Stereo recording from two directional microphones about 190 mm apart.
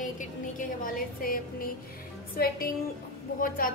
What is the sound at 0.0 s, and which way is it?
A woman's voice, 45° left (ahead or behind).